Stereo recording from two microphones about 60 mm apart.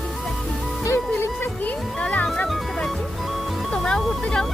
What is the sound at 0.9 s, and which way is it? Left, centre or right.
Music, left.